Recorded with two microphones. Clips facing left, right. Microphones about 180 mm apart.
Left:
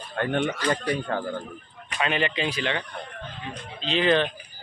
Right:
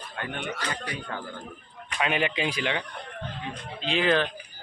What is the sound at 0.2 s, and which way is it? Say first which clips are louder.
Speech: left 8 dB; 55° left (ahead or behind).